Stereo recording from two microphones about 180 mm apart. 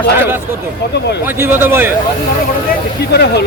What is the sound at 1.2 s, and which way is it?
Speech, 10° right (ahead or behind).